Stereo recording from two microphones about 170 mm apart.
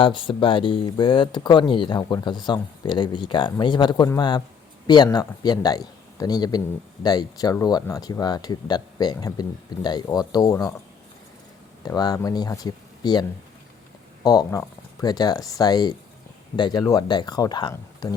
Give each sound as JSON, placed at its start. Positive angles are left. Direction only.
{"t": 0.0, "sound": "speech", "side_deg": 30}
{"t": 11.9, "sound": "speech", "side_deg": 25}
{"t": 14.3, "sound": "speech", "side_deg": 20}